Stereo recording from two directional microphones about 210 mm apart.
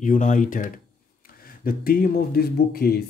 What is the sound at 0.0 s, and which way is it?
Speech, 40° left (ahead or behind).